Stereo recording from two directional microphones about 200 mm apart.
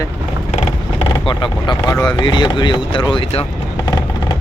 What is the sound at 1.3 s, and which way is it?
Speech, 25° left (ahead or behind).